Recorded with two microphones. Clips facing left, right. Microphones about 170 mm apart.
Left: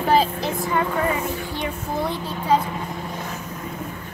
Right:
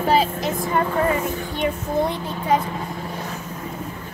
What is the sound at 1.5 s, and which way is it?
Speech, 20° right (ahead or behind).